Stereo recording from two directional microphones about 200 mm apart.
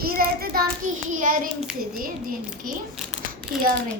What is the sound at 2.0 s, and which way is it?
Speech, 45° right (ahead or behind).